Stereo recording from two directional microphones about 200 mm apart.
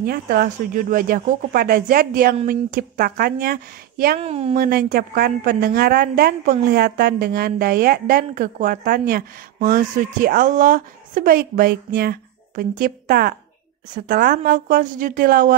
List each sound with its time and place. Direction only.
0.0 s a woman's voice: 50° right (ahead or behind)
4.2 s speech: 30° right (ahead or behind)
4.6 s a woman's voice: 45° right (ahead or behind)